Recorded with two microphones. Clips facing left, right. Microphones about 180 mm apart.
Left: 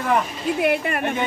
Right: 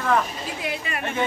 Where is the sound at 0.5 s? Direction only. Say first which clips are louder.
Left 10 dB; 60° left (ahead or behind).